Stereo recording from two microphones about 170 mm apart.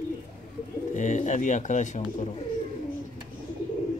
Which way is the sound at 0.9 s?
45° left (ahead or behind).